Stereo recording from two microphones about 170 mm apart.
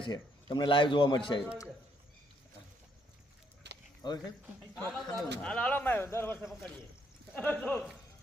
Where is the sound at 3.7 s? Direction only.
90° right.